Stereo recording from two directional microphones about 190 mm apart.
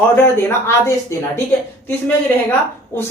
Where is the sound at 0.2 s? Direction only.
15° left (ahead or behind).